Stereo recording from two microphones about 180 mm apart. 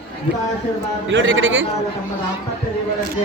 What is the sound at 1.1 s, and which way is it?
Speech, 90° right.